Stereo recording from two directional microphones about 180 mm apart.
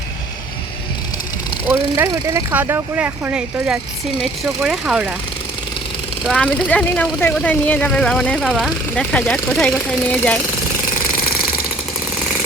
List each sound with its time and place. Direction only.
1.7 s speech: 15° right (ahead or behind)
6.2 s speech: 5° left (ahead or behind)